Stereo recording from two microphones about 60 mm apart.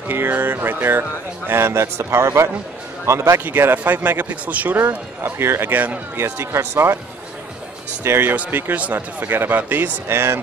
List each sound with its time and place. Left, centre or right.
0.1 s a man's voice: right
3.4 s speech: right
4.8 s a man's voice: right
5.7 s speech: right
6.2 s a man's voice: right
8.0 s speech: right
10.0 s a man's voice: right